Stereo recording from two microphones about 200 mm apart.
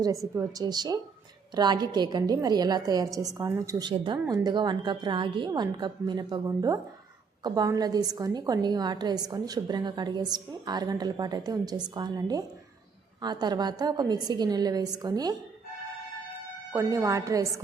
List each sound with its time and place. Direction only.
0.3 s a woman's voice: 20° right (ahead or behind)
16.7 s speech: 15° right (ahead or behind)